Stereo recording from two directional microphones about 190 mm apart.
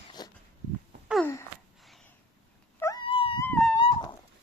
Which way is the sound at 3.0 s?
30° left (ahead or behind).